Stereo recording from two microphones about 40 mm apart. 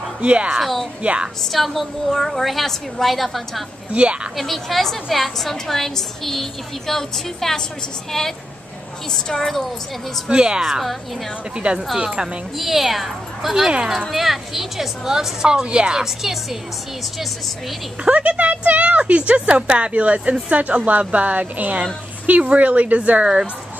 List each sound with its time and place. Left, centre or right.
0.2 s a woman's voice: right
0.6 s a woman's voice: centre
1.0 s a woman's voice: right
1.4 s a woman's voice: centre
3.9 s a woman's voice: right
4.4 s a woman's voice: centre
10.3 s a woman's voice: right
10.6 s a woman's voice: centre
11.5 s a woman's voice: right
12.5 s a woman's voice: centre; by 16.0 s right
16.0 s a woman's voice: centre
18.0 s a woman's voice: right